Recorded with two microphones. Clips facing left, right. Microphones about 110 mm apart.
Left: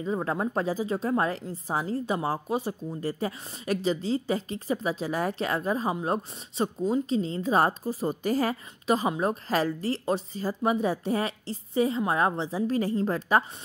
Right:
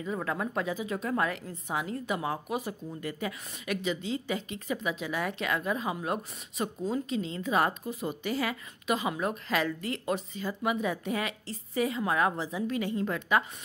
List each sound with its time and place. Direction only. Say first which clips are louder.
0.0 s speech: left 4 dB; 30° left (ahead or behind)